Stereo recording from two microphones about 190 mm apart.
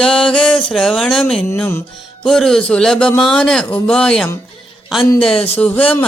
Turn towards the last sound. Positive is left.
turn(degrees=10)  # may be behind; listen again after turning